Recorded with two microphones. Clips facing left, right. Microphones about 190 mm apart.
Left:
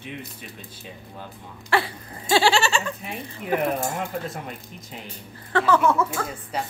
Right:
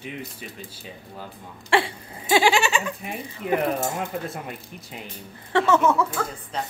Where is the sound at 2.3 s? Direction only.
15° right (ahead or behind).